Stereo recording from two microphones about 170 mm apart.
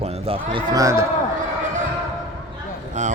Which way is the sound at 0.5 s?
20° right (ahead or behind).